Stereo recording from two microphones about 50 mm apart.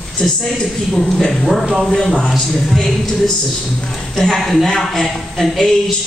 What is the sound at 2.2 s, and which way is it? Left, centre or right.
Speech, centre.